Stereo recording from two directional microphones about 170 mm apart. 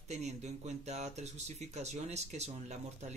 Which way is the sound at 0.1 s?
40° right (ahead or behind).